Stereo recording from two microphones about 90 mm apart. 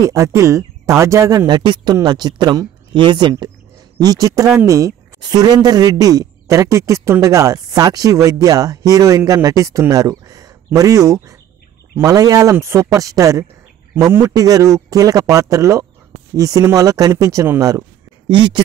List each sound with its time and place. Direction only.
0.0 s speech: 40° right (ahead or behind)
1.5 s speech: 55° right (ahead or behind)
4.0 s speech: 40° right (ahead or behind)
5.2 s speech: 50° right (ahead or behind)
18.3 s speech: 60° right (ahead or behind)